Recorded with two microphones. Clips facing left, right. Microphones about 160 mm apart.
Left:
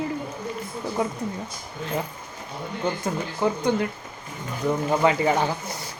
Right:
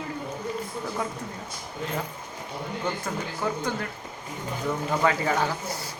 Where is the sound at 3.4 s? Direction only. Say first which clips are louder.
Left 6 dB; 20° left (ahead or behind).